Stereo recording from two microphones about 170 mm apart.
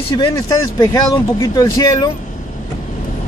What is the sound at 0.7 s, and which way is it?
Speech, 20° left (ahead or behind).